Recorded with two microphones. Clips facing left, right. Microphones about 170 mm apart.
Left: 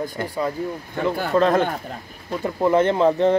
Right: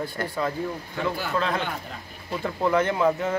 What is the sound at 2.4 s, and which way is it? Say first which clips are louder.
Speech: left 5 dB; 20° left (ahead or behind).